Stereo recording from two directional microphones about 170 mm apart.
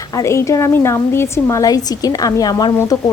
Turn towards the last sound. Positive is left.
turn(degrees=20)  # may be behind; listen again after turning